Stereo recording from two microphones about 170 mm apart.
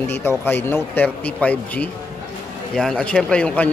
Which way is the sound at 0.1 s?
10° left (ahead or behind).